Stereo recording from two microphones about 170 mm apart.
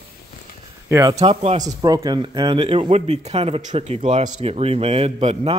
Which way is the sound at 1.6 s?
20° right (ahead or behind).